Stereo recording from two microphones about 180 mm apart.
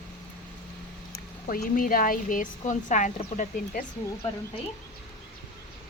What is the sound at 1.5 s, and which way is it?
Speech, 55° left (ahead or behind).